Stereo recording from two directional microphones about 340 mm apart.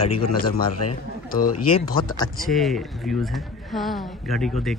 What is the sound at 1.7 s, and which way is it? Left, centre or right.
Speech, centre.